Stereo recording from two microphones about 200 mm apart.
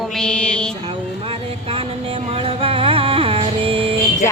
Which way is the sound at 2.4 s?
25° right (ahead or behind).